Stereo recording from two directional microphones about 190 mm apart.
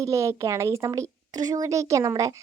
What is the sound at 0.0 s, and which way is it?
A woman's voice, 15° right (ahead or behind).